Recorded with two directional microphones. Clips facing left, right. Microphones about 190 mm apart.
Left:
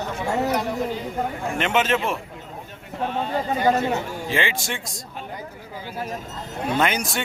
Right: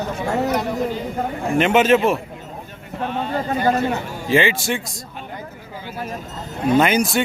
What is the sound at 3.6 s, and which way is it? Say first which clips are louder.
Speech: right 1 dB; 20° left (ahead or behind).